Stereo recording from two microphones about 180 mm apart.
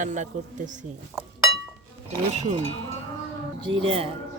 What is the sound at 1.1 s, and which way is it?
Speech, centre (ahead or behind).